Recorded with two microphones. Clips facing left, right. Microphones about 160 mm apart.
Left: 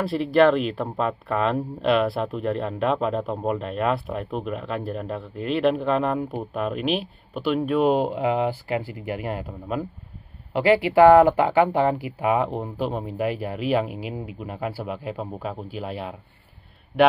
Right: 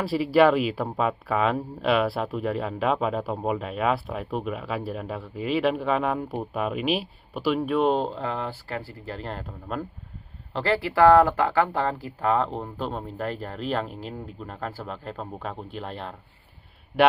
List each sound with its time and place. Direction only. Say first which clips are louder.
0.0 s speech: left 1 dB; 5° right (ahead or behind); by 9.5 s 10° left (ahead or behind)
10.5 s speech: left 7 dB; 15° left (ahead or behind)